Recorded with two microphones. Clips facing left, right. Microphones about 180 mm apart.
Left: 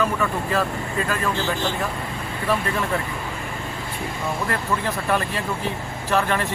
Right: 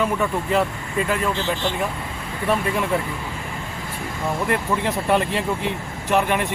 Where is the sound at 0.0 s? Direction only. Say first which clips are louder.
Right 1 dB; 20° right (ahead or behind).